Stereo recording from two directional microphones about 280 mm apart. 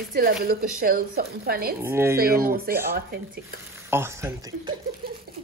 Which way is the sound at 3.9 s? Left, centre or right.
Centre.